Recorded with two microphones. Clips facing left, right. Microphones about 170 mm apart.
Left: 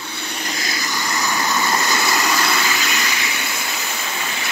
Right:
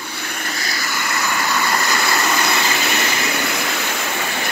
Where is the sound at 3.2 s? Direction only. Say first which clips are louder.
Right 5 dB; 65° right (ahead or behind).